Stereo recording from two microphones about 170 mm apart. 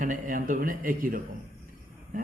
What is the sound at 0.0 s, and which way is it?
A man's voice, 50° right (ahead or behind).